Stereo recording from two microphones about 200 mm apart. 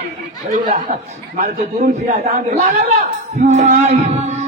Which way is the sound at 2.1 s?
35° right (ahead or behind).